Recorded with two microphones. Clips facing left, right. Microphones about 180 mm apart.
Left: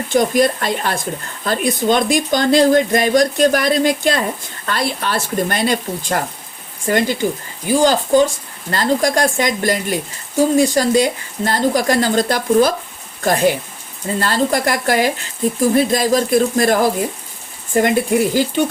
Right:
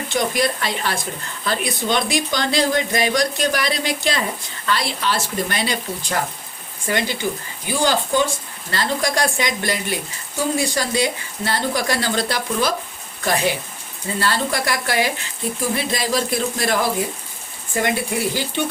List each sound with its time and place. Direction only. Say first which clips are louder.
0.1 s a woman's voice: left 7 dB; 50° left (ahead or behind)